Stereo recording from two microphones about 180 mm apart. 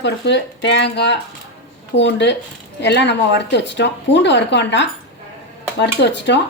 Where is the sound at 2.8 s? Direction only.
75° left (ahead or behind).